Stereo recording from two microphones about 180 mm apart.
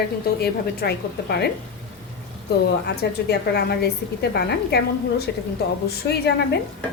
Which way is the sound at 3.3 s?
65° left (ahead or behind).